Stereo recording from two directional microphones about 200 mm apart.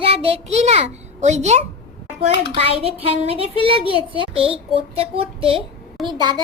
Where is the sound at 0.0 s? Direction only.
30° right (ahead or behind).